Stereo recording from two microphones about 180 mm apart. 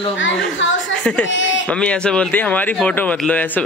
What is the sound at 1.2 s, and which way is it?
Speech, 90° left.